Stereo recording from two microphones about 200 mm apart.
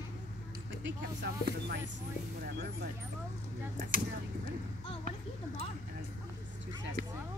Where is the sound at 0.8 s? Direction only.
55° right (ahead or behind).